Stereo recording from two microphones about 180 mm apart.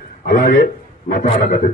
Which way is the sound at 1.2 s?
35° left (ahead or behind).